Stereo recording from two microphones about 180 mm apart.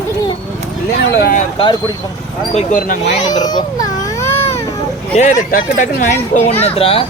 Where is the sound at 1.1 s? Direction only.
60° left (ahead or behind).